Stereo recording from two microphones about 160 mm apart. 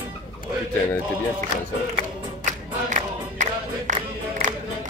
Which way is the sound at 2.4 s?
50° right (ahead or behind).